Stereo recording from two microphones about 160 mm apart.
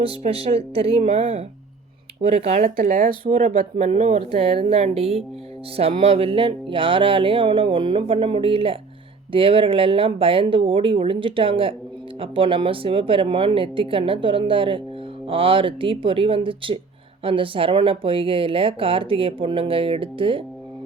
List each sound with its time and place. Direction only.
0.0 s speech: 35° right (ahead or behind)
2.6 s speech: 60° right (ahead or behind); by 20.4 s 35° right (ahead or behind)